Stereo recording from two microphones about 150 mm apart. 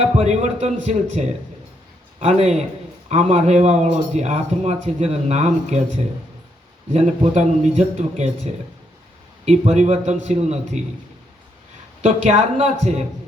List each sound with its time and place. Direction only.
0.0 s speech: 50° right (ahead or behind)
2.2 s speech: 45° right (ahead or behind)
6.9 s speech: 50° right (ahead or behind)
12.0 s speech: 50° right (ahead or behind)